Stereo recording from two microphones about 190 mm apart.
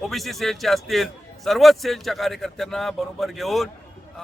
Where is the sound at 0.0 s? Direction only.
Centre (ahead or behind).